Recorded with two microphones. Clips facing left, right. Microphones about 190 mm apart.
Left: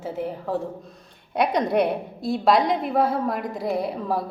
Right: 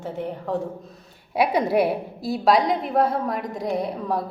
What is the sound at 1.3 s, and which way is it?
A woman's voice, 5° right (ahead or behind).